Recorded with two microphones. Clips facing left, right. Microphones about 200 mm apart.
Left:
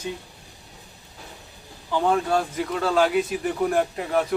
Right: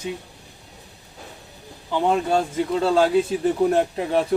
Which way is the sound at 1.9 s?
20° right (ahead or behind).